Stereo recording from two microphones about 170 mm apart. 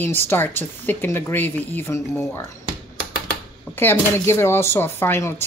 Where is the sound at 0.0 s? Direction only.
15° left (ahead or behind).